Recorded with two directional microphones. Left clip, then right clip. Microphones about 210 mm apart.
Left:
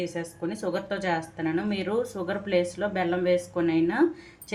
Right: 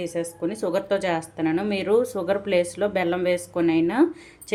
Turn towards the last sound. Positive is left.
turn(degrees=-25)  # may be behind; listen again after turning